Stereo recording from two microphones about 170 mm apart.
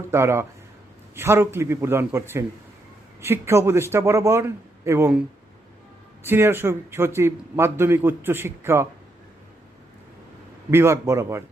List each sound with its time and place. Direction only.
0.1 s a man's voice: 15° right (ahead or behind)
6.2 s a man's voice: 15° right (ahead or behind)
10.7 s a man's voice: 15° right (ahead or behind)